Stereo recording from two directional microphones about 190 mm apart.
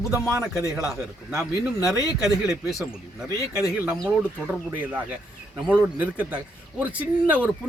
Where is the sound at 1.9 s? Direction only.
20° left (ahead or behind).